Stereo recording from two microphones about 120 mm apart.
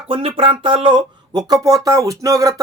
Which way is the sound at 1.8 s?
30° right (ahead or behind).